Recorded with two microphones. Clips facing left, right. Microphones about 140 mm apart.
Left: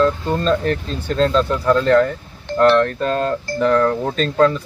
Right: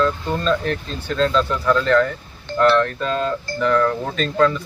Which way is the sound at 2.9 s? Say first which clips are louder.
Left 3 dB; 45° left (ahead or behind).